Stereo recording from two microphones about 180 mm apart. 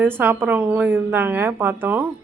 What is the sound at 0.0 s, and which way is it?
A woman's voice, 10° right (ahead or behind).